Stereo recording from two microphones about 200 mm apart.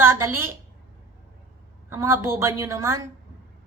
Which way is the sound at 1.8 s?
15° right (ahead or behind).